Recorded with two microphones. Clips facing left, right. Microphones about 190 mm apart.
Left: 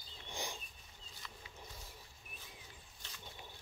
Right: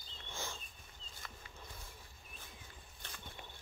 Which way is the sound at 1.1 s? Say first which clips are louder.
Even; 50° right (ahead or behind).